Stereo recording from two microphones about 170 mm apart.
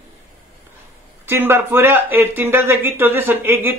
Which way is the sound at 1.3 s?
15° right (ahead or behind).